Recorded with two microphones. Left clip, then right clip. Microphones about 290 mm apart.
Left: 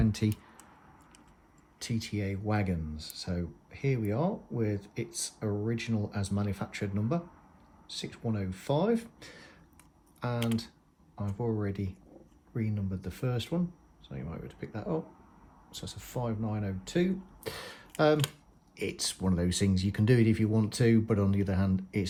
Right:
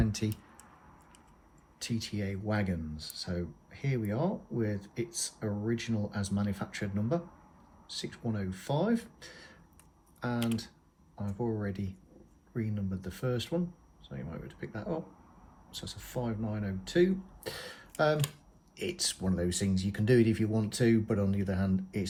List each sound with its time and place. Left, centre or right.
0.0 s speech: left
1.8 s speech: left